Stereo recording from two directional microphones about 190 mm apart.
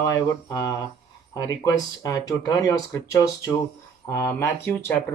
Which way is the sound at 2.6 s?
15° left (ahead or behind).